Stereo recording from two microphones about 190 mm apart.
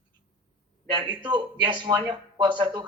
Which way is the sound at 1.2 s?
25° right (ahead or behind).